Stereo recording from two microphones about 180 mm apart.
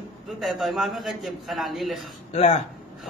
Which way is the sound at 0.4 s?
Centre (ahead or behind).